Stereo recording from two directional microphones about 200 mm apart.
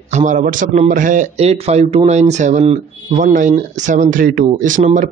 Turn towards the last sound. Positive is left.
turn(degrees=-40)  # may be behind; listen again after turning